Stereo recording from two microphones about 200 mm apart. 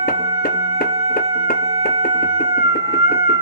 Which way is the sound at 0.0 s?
50° left (ahead or behind).